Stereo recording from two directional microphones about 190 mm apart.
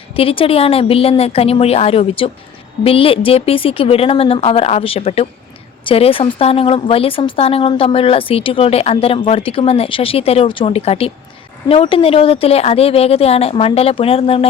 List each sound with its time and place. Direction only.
0.1 s a woman's voice: 30° left (ahead or behind)